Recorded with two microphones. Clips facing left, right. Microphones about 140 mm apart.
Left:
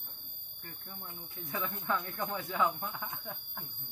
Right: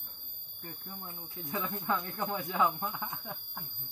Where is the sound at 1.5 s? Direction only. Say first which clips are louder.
Right 2 dB; 30° right (ahead or behind).